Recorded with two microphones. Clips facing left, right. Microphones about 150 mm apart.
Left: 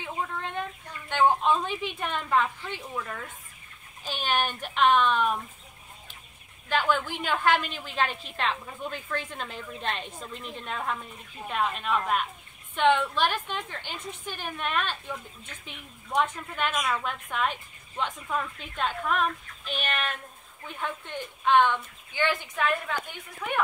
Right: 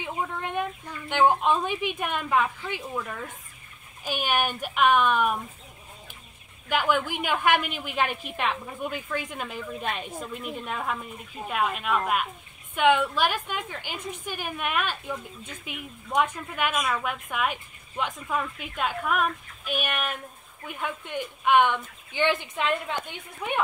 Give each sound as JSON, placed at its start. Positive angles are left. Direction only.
{"t": 0.0, "sound": "a woman's voice", "side_deg": -15}
{"t": 6.7, "sound": "a woman's voice", "side_deg": -10}